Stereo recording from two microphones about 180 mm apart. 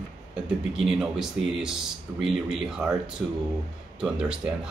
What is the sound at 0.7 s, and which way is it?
Speech, 5° right (ahead or behind).